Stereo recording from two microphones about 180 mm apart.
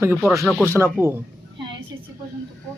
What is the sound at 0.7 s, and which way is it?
Speech, 15° right (ahead or behind).